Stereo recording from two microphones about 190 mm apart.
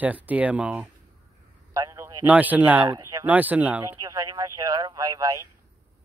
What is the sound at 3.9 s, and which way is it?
Speech, 20° right (ahead or behind).